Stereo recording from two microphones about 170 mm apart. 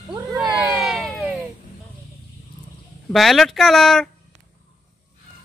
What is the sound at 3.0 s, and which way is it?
Speech, centre (ahead or behind).